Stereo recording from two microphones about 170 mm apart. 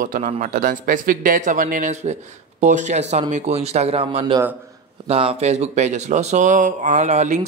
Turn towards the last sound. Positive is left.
turn(degrees=-45)  # may be behind; listen again after turning